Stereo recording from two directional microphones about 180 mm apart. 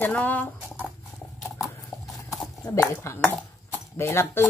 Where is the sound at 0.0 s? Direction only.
10° left (ahead or behind).